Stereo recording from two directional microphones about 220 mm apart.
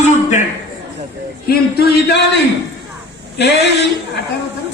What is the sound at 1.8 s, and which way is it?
Speech, 45° left (ahead or behind).